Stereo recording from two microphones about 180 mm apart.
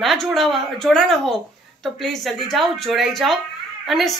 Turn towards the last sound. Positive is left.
turn(degrees=0)  # may be behind; listen again after turning